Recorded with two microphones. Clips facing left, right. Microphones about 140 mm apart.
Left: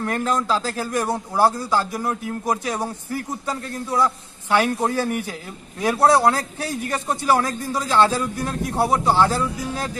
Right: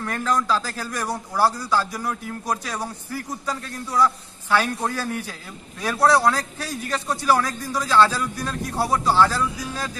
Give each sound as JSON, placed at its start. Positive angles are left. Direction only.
{"t": 0.0, "sound": "a man's voice", "side_deg": 20}